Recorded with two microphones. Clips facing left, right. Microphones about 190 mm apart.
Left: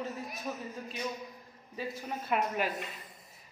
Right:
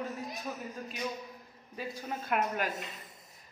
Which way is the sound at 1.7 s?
5° left (ahead or behind).